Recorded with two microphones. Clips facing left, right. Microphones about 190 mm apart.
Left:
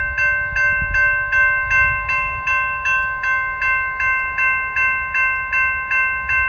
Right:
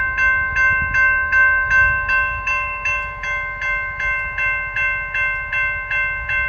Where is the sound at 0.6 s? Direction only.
35° left (ahead or behind); by 2.5 s 5° left (ahead or behind).